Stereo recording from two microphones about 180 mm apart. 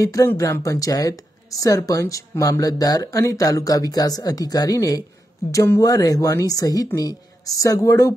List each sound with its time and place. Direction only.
0.0 s a woman's voice: 15° left (ahead or behind)